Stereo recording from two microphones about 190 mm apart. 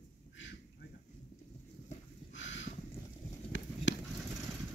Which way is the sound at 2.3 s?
75° left (ahead or behind).